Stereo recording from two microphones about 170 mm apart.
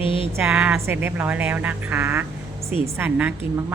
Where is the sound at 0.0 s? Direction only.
30° left (ahead or behind).